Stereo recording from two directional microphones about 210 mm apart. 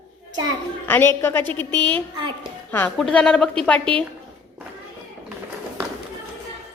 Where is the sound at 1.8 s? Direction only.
20° right (ahead or behind).